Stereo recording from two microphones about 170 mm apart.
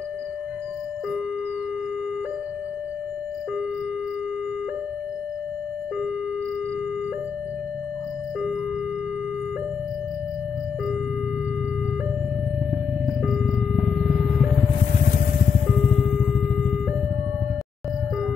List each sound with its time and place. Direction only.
13.0 s vehicle: 5° right (ahead or behind)
15.0 s music: 65° left (ahead or behind)
15.9 s music: centre (ahead or behind)